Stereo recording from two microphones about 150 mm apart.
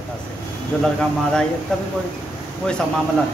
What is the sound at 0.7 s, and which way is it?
Speech, 5° left (ahead or behind).